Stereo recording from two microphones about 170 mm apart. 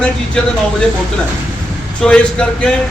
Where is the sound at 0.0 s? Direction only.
5° left (ahead or behind).